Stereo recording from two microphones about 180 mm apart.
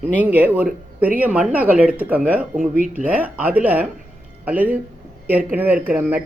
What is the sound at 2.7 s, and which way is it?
Speech, 50° right (ahead or behind).